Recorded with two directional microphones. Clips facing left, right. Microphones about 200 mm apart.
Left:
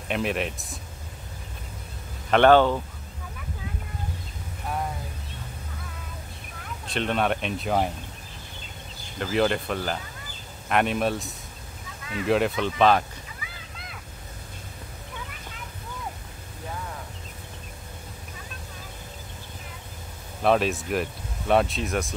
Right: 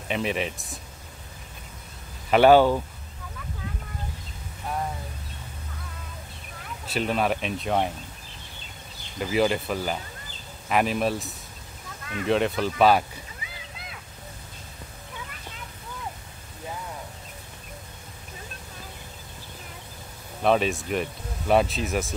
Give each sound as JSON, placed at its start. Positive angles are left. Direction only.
{"t": 0.1, "sound": "speech", "side_deg": 0}
{"t": 2.3, "sound": "speech", "side_deg": -10}
{"t": 6.9, "sound": "speech", "side_deg": -5}
{"t": 9.2, "sound": "speech", "side_deg": -5}
{"t": 12.0, "sound": "a sound", "side_deg": -50}
{"t": 12.3, "sound": "speech", "side_deg": 0}
{"t": 20.4, "sound": "speech", "side_deg": 0}